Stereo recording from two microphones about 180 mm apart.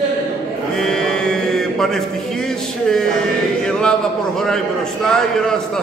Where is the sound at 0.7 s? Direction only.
5° left (ahead or behind).